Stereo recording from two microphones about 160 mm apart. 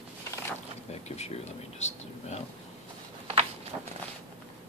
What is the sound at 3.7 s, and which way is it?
Walk, 15° right (ahead or behind).